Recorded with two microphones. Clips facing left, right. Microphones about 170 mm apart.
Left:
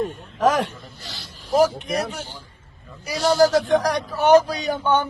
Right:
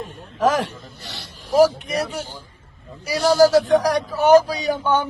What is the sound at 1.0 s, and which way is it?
Speech, 65° right (ahead or behind).